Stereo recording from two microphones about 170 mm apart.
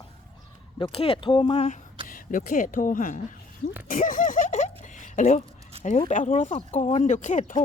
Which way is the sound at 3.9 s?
50° left (ahead or behind).